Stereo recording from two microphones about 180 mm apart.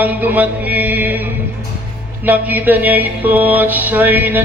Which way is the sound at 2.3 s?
10° right (ahead or behind).